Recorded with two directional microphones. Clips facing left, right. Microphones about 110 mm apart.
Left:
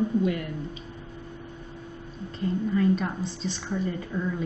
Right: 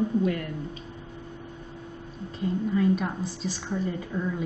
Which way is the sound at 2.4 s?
5° right (ahead or behind).